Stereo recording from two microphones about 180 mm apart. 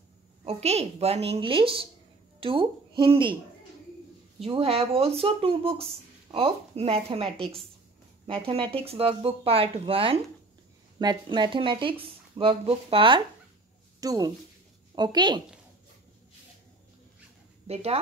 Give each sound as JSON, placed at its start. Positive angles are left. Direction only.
{"t": 0.5, "sound": "speech", "side_deg": -35}
{"t": 4.4, "sound": "speech", "side_deg": -30}
{"t": 8.5, "sound": "speech", "side_deg": -30}
{"t": 17.6, "sound": "speech", "side_deg": -35}